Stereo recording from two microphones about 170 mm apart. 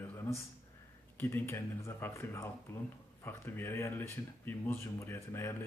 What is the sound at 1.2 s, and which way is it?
Speech, 15° left (ahead or behind).